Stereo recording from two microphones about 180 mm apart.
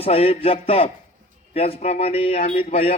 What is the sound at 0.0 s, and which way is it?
A man's voice, 30° left (ahead or behind).